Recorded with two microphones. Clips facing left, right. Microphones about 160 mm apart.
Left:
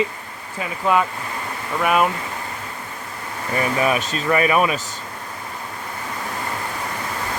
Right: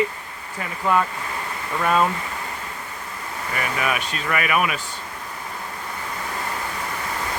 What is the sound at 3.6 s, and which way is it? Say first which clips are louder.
Speech: left 5 dB; 30° left (ahead or behind).